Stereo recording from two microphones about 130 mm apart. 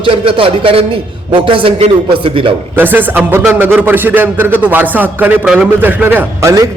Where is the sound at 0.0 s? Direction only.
45° right (ahead or behind).